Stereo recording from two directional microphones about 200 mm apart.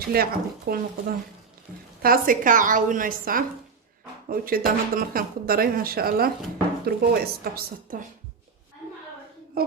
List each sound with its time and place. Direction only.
0.0 s a woman's voice: 50° right (ahead or behind)